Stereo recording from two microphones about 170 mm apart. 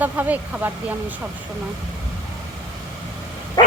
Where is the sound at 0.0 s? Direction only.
10° right (ahead or behind).